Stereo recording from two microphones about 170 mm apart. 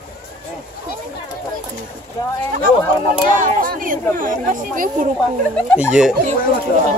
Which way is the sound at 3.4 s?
50° right (ahead or behind).